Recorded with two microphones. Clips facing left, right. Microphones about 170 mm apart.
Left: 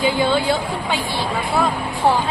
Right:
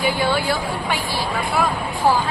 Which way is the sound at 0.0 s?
20° left (ahead or behind).